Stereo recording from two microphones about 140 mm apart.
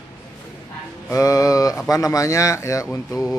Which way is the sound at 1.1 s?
25° left (ahead or behind).